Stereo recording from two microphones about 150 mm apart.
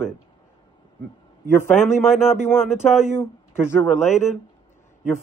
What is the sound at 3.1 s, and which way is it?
Speech, 15° left (ahead or behind).